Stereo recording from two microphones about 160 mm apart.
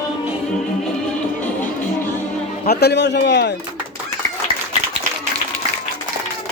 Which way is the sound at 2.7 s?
90° left.